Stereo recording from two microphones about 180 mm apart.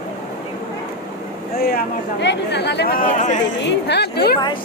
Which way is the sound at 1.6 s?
55° left (ahead or behind).